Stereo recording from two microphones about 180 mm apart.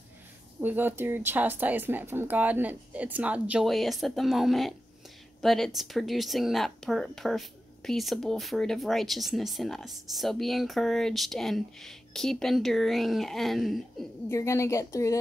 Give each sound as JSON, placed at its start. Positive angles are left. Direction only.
{"t": 0.6, "sound": "a woman's voice", "side_deg": -10}
{"t": 14.3, "sound": "a woman's voice", "side_deg": 15}